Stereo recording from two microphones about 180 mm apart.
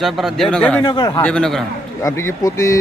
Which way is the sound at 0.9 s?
25° left (ahead or behind).